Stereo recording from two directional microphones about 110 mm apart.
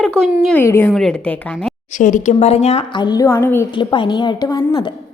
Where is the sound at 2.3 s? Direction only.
75° left (ahead or behind).